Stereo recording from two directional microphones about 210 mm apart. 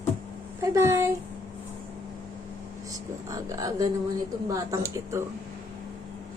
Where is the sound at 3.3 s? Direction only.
15° right (ahead or behind).